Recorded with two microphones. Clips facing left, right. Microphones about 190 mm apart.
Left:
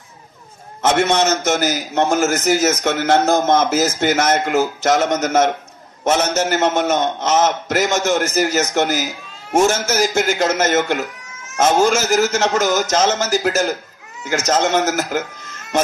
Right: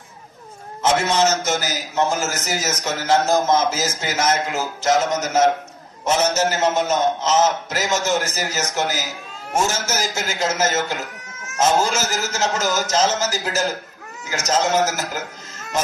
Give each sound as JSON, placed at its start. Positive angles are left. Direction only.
{"t": 0.8, "sound": "a man's voice", "side_deg": 60}